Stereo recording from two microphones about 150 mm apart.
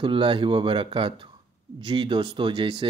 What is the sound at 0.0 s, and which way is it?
Speech, 35° right (ahead or behind).